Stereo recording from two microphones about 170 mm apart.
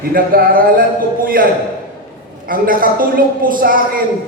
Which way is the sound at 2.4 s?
55° right (ahead or behind).